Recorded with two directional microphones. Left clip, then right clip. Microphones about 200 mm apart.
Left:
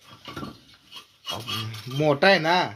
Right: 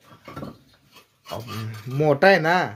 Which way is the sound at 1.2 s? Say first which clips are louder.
Left 3 dB; 35° right (ahead or behind).